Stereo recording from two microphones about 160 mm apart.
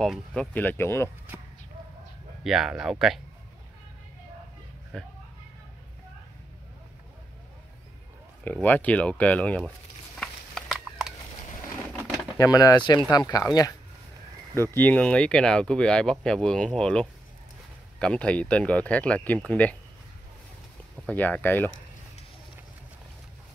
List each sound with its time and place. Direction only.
0.0 s speech: 5° left (ahead or behind)
2.4 s speech: centre (ahead or behind)
4.9 s speech: 5° left (ahead or behind)
8.6 s speech: 10° left (ahead or behind)
10.1 s a sound: 5° left (ahead or behind)
12.4 s speech: 20° left (ahead or behind)
14.8 s speech: 10° left (ahead or behind)
21.1 s speech: 10° left (ahead or behind)